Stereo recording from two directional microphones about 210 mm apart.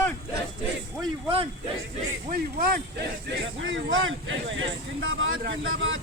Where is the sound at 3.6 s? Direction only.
65° right (ahead or behind).